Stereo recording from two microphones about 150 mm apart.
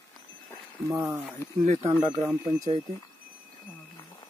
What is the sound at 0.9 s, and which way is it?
Speech, 20° right (ahead or behind).